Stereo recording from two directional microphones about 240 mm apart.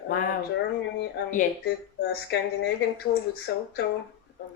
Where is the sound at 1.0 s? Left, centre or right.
Left.